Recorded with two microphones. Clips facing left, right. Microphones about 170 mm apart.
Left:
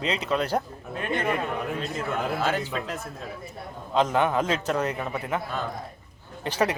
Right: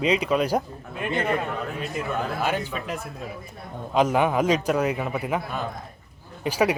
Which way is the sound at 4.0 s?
10° right (ahead or behind).